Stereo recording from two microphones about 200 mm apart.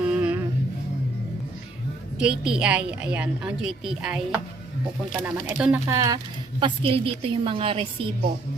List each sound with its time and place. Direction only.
0.1 s music: 5° right (ahead or behind)
2.1 s a woman's voice: 5° right (ahead or behind)
5.9 s a woman's voice: 15° right (ahead or behind)